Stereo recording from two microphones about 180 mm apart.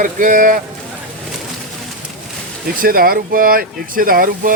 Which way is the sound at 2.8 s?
55° right (ahead or behind).